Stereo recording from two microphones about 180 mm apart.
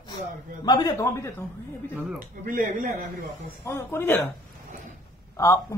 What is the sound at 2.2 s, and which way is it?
Speech, 45° right (ahead or behind).